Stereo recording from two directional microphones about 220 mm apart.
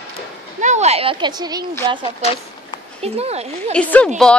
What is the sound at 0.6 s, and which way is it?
Speech, 30° right (ahead or behind).